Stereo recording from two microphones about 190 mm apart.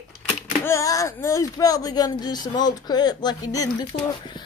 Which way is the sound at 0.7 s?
15° left (ahead or behind).